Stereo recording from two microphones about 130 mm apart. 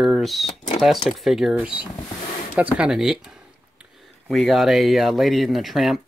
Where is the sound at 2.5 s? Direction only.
10° right (ahead or behind).